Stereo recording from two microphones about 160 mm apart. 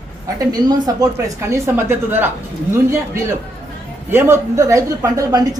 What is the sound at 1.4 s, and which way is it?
Speech, 15° right (ahead or behind).